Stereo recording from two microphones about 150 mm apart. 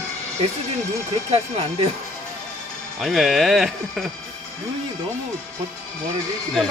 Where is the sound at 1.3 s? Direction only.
40° right (ahead or behind).